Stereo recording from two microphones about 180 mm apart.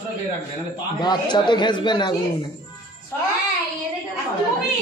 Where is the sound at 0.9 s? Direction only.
25° left (ahead or behind).